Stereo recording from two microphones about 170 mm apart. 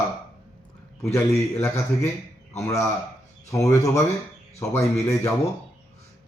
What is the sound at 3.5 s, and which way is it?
Speech, 20° left (ahead or behind).